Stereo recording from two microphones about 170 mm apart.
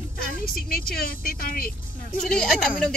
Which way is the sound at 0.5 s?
60° left (ahead or behind).